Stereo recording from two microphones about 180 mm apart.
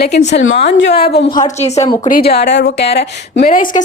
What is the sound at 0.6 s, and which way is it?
Speech, 70° left (ahead or behind).